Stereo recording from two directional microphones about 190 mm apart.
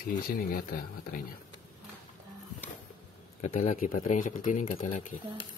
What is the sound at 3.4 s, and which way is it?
Speech, 40° left (ahead or behind).